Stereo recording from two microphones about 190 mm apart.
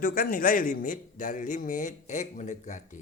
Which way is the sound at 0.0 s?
50° left (ahead or behind).